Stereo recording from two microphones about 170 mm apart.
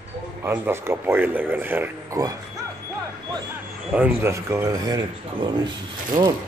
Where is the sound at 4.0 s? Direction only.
15° right (ahead or behind).